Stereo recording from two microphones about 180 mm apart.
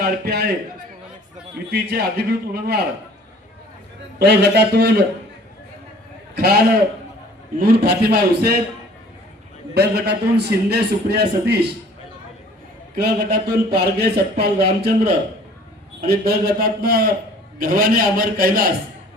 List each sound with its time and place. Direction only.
0.0 s a man's voice: 60° right (ahead or behind)
1.7 s a man's voice: 60° right (ahead or behind)
4.2 s a man's voice: 65° right (ahead or behind)
6.3 s a man's voice: 60° right (ahead or behind)
7.6 s a man's voice: 65° right (ahead or behind)
9.7 s a man's voice: 65° right (ahead or behind)
13.0 s a man's voice: 65° right (ahead or behind)
16.0 s a man's voice: 60° right (ahead or behind)